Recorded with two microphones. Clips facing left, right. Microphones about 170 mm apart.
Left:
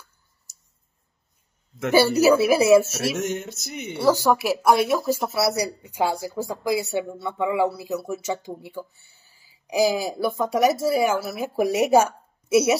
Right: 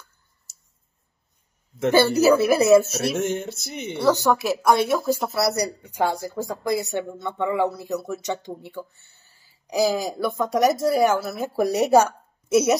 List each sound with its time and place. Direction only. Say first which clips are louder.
1.9 s speech: even; 10° left (ahead or behind)
3.2 s a sound: right 2 dB; 30° right (ahead or behind)
3.9 s speech: even; 10° left (ahead or behind)